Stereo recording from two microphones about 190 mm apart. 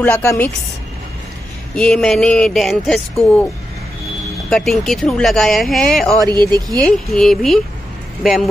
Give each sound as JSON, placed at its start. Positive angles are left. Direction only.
{"t": 0.0, "sound": "a woman's voice", "side_deg": 10}
{"t": 1.8, "sound": "speech", "side_deg": 5}
{"t": 4.5, "sound": "speech", "side_deg": 0}
{"t": 6.2, "sound": "speech", "side_deg": -25}
{"t": 6.8, "sound": "speech", "side_deg": 5}